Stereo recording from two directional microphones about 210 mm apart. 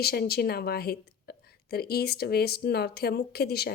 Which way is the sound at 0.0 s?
50° left (ahead or behind).